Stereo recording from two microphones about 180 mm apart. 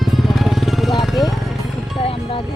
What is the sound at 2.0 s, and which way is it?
Music, 30° left (ahead or behind).